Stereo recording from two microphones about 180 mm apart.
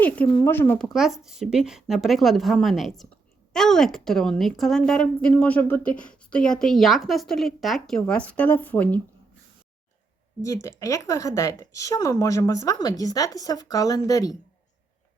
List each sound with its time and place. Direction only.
0.0 s speech: 10° left (ahead or behind)
0.9 s a woman's voice: centre (ahead or behind)
10.4 s speech: 15° left (ahead or behind)